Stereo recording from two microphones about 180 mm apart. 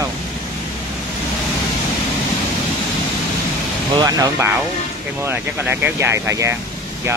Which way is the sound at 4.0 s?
20° right (ahead or behind).